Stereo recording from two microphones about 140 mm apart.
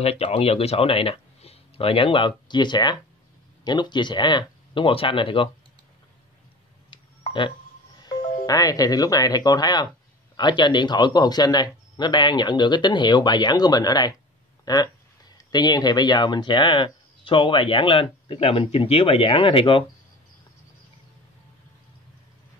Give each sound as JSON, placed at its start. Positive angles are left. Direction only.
{"t": 0.0, "sound": "speech", "side_deg": 45}
{"t": 6.9, "sound": "a sound", "side_deg": 35}
{"t": 8.0, "sound": "speech", "side_deg": 25}